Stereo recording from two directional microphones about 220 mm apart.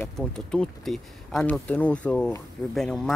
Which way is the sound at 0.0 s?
5° left (ahead or behind).